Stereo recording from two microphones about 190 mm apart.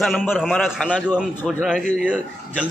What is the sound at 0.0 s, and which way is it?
A man's voice, centre (ahead or behind).